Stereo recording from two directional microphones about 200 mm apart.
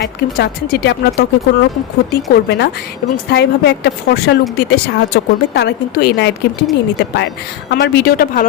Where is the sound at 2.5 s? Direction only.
55° left (ahead or behind).